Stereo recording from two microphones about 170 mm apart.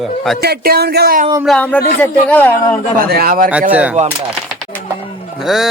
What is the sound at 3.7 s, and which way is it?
Speech, 10° right (ahead or behind).